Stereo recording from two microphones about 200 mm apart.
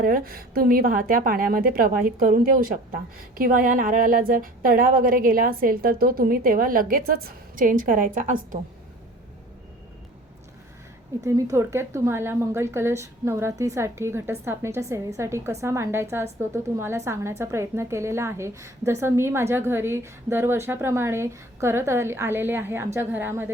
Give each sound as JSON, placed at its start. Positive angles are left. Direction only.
{"t": 0.0, "sound": "a woman's voice", "side_deg": -45}
{"t": 11.2, "sound": "a woman's voice", "side_deg": -15}